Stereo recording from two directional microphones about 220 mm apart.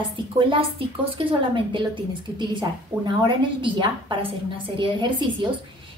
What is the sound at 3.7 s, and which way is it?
A woman's voice, 25° right (ahead or behind).